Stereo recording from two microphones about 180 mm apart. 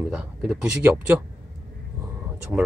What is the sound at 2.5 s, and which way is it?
Speech, 5° right (ahead or behind).